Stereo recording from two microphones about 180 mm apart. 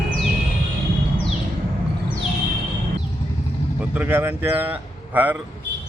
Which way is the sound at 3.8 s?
10° right (ahead or behind).